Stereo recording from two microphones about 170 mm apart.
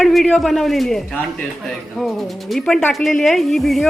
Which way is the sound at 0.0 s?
Centre (ahead or behind).